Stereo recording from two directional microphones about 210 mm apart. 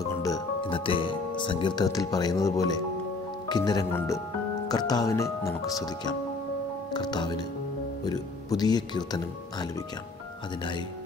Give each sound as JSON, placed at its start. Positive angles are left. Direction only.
{"t": 0.0, "sound": "speech", "side_deg": 15}